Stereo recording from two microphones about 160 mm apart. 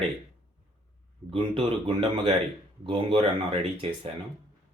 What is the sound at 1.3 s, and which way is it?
Speech, 35° right (ahead or behind).